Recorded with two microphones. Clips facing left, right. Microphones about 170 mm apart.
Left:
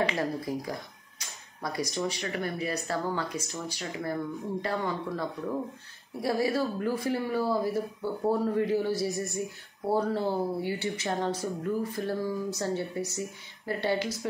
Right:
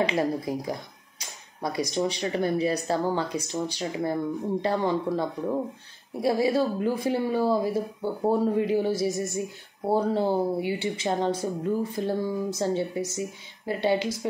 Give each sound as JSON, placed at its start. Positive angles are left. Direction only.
{"t": 0.0, "sound": "speech", "side_deg": -20}